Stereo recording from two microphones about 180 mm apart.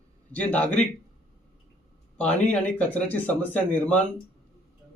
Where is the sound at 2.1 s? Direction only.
10° left (ahead or behind).